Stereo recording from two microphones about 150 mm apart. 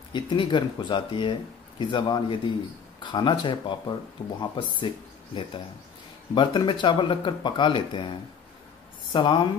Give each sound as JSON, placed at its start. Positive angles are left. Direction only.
{"t": 0.1, "sound": "a woman's voice", "side_deg": 30}